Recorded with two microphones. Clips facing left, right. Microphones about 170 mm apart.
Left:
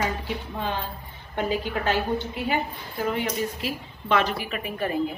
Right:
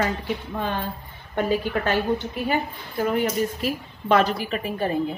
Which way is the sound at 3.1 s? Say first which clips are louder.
Right 4 dB; 45° right (ahead or behind).